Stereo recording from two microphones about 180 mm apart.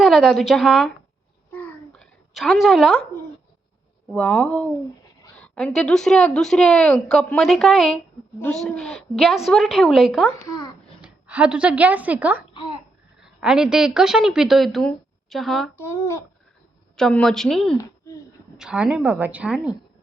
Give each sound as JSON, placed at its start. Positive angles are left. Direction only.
{"t": 0.0, "sound": "a woman's voice", "side_deg": 0}
{"t": 1.5, "sound": "a sound", "side_deg": 10}
{"t": 4.1, "sound": "a woman's voice", "side_deg": 5}
{"t": 10.2, "sound": "speech", "side_deg": 20}
{"t": 11.0, "sound": "a woman's voice", "side_deg": -10}
{"t": 15.8, "sound": "speech", "side_deg": 15}
{"t": 17.0, "sound": "a woman's voice", "side_deg": 5}
{"t": 18.0, "sound": "a sound", "side_deg": 15}
{"t": 18.5, "sound": "a woman's voice", "side_deg": -5}